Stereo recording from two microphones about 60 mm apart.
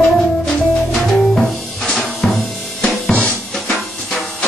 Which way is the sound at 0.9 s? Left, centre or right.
Centre.